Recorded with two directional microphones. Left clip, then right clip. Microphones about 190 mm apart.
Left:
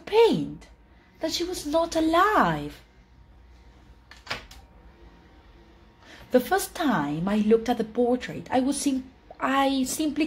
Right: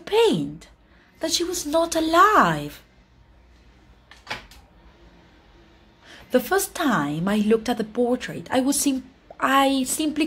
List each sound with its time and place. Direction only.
0.0 s a sound: 15° right (ahead or behind)
1.2 s a woman's voice: 25° right (ahead or behind)
6.0 s a woman's voice: 10° right (ahead or behind)